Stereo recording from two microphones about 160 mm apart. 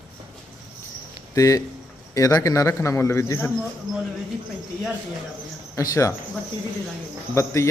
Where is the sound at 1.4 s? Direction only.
20° left (ahead or behind).